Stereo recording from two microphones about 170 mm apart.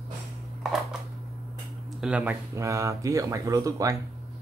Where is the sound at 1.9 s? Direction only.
5° right (ahead or behind); by 4.0 s 20° right (ahead or behind).